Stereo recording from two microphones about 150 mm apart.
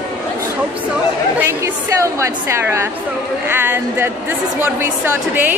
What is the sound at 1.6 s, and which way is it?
A woman's voice, 20° right (ahead or behind).